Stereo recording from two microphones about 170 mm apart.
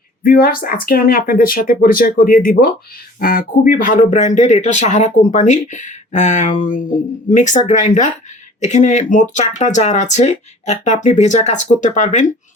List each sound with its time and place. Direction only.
0.2 s speech: 60° left (ahead or behind)